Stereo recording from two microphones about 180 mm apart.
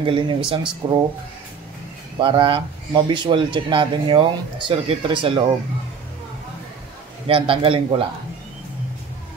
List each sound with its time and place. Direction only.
0.0 s speech: 25° right (ahead or behind)
2.1 s speech: 30° right (ahead or behind)
7.2 s a man's voice: 30° right (ahead or behind)